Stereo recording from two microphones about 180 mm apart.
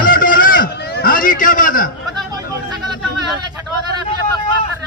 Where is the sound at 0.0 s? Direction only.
50° left (ahead or behind).